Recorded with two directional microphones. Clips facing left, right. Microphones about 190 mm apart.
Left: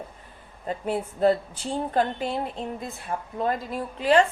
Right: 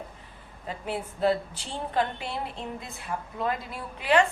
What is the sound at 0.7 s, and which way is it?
A woman's voice, 45° left (ahead or behind).